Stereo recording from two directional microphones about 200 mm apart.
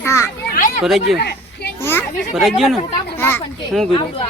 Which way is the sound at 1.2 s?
55° left (ahead or behind).